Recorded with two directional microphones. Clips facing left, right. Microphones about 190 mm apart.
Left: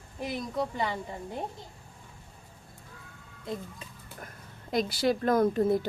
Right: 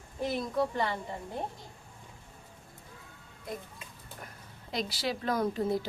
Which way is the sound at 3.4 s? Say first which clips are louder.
Left 4 dB; 25° left (ahead or behind).